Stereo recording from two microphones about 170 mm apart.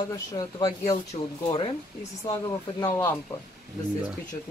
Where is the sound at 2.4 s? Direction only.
25° left (ahead or behind).